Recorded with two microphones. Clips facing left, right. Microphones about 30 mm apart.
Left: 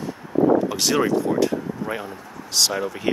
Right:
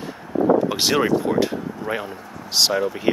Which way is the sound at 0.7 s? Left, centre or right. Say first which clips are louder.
Right 1 dB; right.